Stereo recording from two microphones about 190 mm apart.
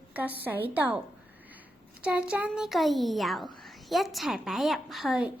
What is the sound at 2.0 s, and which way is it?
A child's voice, 5° right (ahead or behind).